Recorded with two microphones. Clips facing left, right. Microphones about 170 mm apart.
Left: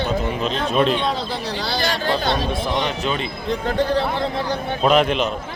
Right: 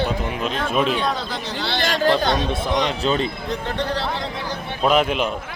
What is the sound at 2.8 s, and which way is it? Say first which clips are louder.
Speech: right 2 dB; 35° right (ahead or behind).